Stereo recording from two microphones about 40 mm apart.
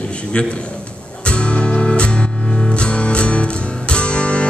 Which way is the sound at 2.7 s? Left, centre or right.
Left.